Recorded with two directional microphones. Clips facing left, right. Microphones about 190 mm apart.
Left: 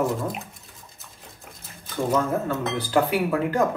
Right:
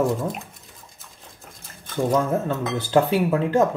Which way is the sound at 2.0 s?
25° right (ahead or behind).